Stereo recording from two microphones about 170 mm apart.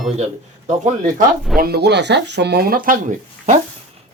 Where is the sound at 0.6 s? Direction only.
45° right (ahead or behind).